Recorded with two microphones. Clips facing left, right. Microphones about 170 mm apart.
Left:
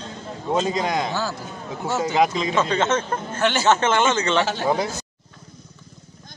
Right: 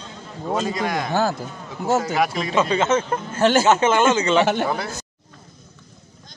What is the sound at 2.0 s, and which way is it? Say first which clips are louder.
Speech: left 2 dB; 20° left (ahead or behind).